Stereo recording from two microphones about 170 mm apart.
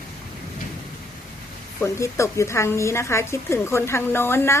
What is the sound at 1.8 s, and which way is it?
A woman's voice, 15° left (ahead or behind).